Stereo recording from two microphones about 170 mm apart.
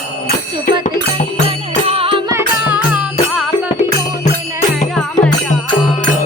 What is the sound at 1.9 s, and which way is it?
Music, 35° right (ahead or behind).